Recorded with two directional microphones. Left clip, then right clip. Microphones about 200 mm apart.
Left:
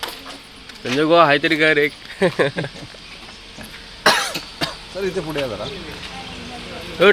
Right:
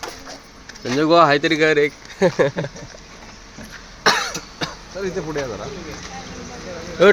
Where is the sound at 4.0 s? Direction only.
50° left (ahead or behind).